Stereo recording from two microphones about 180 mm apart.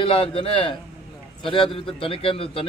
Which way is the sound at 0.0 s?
30° left (ahead or behind).